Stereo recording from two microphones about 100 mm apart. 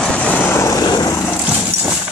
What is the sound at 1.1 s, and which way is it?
Dog, 25° left (ahead or behind).